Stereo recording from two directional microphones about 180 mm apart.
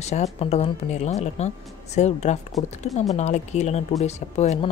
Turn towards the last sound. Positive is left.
turn(degrees=40)  # may be behind; listen again after turning